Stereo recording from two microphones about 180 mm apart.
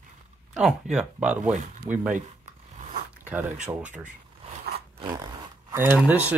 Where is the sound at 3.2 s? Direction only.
10° right (ahead or behind).